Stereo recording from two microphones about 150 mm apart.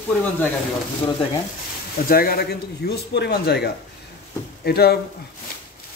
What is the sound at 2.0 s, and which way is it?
Speech, 80° left.